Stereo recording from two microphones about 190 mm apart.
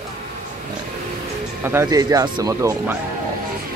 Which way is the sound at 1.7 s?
15° right (ahead or behind).